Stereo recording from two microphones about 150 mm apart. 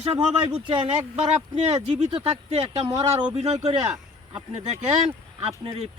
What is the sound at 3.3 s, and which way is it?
Speech, 45° right (ahead or behind).